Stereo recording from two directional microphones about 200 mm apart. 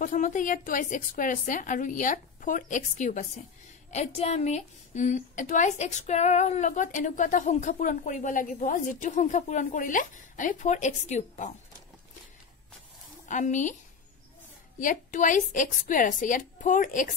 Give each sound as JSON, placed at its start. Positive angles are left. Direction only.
{"t": 0.0, "sound": "a woman's voice", "side_deg": 40}
{"t": 13.3, "sound": "a woman's voice", "side_deg": 40}
{"t": 14.8, "sound": "a woman's voice", "side_deg": 40}